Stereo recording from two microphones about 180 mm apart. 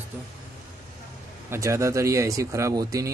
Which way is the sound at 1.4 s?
15° right (ahead or behind).